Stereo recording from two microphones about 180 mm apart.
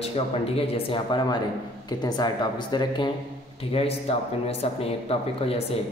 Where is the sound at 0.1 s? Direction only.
35° left (ahead or behind).